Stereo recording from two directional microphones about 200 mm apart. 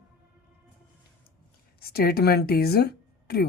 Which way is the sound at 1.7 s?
50° left (ahead or behind).